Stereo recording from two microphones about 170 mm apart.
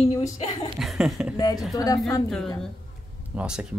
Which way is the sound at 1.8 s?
20° left (ahead or behind).